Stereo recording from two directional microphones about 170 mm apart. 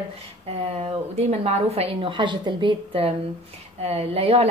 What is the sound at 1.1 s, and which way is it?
A woman's voice, 35° right (ahead or behind).